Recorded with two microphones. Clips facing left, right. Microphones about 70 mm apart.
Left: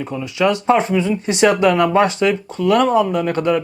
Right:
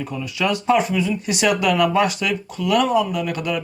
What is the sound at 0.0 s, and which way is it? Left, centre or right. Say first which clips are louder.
Speech: left 5 dB; left.